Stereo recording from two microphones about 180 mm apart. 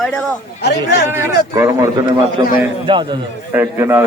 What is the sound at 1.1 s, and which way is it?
A man's voice, 15° right (ahead or behind).